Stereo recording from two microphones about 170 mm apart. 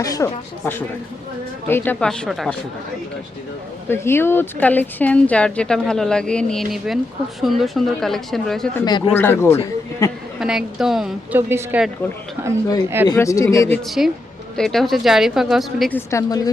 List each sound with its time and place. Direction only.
0.0 s a woman's voice: 20° left (ahead or behind); by 2.6 s centre (ahead or behind)
3.8 s a woman's voice: 15° left (ahead or behind)
8.8 s speech: 25° left (ahead or behind)
9.1 s a woman's voice: 15° left (ahead or behind)
10.4 s a man's voice: 5° right (ahead or behind)
13.1 s a woman's voice: 20° left (ahead or behind)
13.8 s speech: centre (ahead or behind)
15.9 s a woman's voice: 15° left (ahead or behind)